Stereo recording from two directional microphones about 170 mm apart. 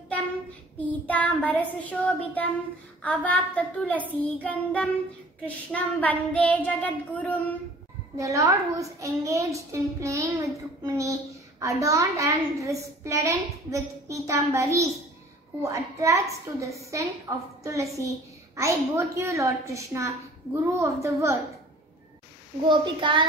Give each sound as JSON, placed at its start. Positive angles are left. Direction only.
{"t": 0.7, "sound": "child singing", "side_deg": 10}
{"t": 8.2, "sound": "a child's voice", "side_deg": -20}
{"t": 22.7, "sound": "a child's voice", "side_deg": -30}